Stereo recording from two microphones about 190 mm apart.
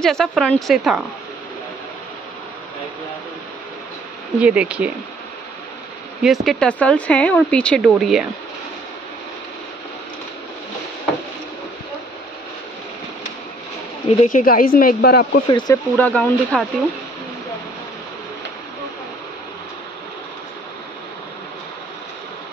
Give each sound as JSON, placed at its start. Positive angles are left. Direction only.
{"t": 0.0, "sound": "speech", "side_deg": 0}
{"t": 4.4, "sound": "speech", "side_deg": -5}
{"t": 6.2, "sound": "speech", "side_deg": 0}
{"t": 14.2, "sound": "speech", "side_deg": 45}
{"t": 15.4, "sound": "speech", "side_deg": 20}
{"t": 16.0, "sound": "speech", "side_deg": 5}